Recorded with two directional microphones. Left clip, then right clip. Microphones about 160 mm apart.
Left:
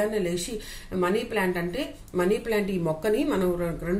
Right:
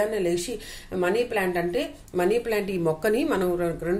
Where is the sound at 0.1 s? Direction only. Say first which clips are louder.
Right 2 dB; 20° right (ahead or behind).